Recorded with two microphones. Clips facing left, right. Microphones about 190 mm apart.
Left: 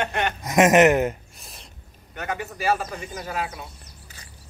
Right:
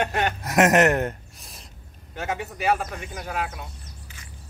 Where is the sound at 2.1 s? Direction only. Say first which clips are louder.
Right 1 dB; 25° right (ahead or behind).